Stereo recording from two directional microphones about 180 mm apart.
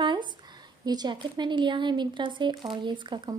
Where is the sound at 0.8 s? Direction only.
25° right (ahead or behind).